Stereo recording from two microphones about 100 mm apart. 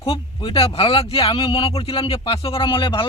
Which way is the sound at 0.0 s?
65° left (ahead or behind).